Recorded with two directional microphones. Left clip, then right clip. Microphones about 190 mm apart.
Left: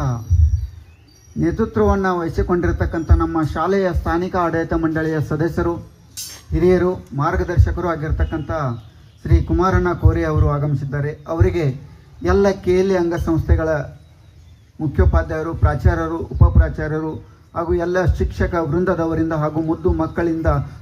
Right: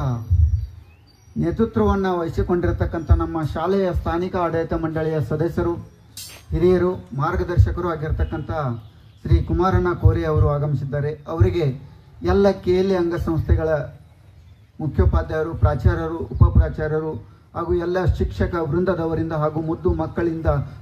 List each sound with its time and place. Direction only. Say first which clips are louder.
1.4 s speech: left 3 dB; 25° left (ahead or behind)